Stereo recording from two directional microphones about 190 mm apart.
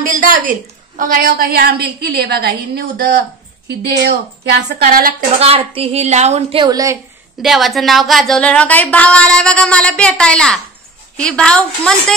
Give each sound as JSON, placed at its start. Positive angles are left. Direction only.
{"t": 0.0, "sound": "a woman's voice", "side_deg": -45}
{"t": 4.6, "sound": "a woman's voice", "side_deg": -60}
{"t": 5.4, "sound": "a woman's voice", "side_deg": -30}
{"t": 7.4, "sound": "a woman's voice", "side_deg": 0}